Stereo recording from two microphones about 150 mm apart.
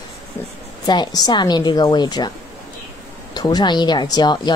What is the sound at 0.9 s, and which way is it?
A woman's voice, 25° left (ahead or behind).